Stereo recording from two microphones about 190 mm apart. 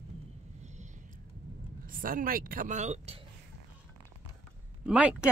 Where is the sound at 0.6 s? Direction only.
40° right (ahead or behind).